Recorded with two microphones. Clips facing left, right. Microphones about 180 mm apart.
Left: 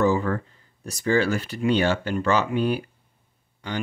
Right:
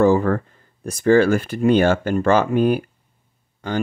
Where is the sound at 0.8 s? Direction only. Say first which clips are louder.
Right 7 dB; 50° right (ahead or behind).